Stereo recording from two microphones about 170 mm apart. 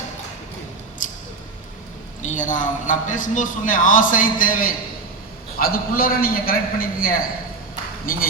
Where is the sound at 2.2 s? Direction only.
50° left (ahead or behind).